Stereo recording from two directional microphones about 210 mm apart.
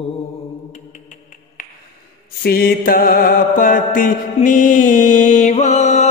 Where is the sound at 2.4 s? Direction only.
45° left (ahead or behind).